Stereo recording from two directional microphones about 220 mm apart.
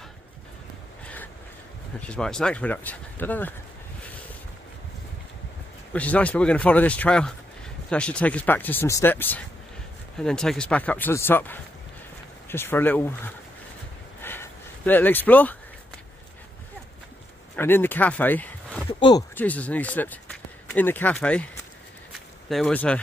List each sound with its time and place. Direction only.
1.0 s a sound: 5° left (ahead or behind)
2.0 s speech: 5° left (ahead or behind)
5.9 s speech: 5° left (ahead or behind)
14.2 s a sound: 10° left (ahead or behind)
17.6 s speech: 10° left (ahead or behind)
18.9 s speech: 20° left (ahead or behind)
19.3 s speech: 5° left (ahead or behind)
22.5 s speech: 5° left (ahead or behind)